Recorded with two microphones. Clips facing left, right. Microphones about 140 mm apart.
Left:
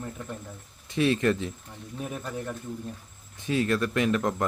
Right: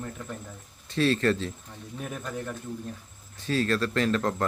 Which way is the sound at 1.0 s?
15° left (ahead or behind).